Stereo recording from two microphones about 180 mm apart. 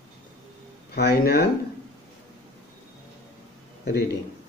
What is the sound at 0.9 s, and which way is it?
Speech, 65° left (ahead or behind).